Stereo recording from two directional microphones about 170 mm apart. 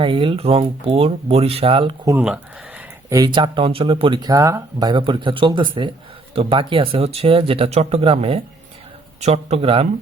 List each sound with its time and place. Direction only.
0.0 s speech: 30° right (ahead or behind)
2.0 s speech: 10° right (ahead or behind)
3.1 s speech: 25° right (ahead or behind)